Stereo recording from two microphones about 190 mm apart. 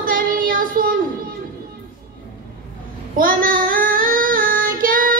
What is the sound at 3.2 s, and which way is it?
Child singing, 45° right (ahead or behind).